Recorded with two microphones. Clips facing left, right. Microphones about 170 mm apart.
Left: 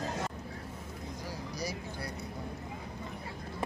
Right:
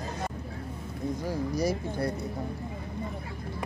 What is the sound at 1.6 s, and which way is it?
Speech, 50° right (ahead or behind).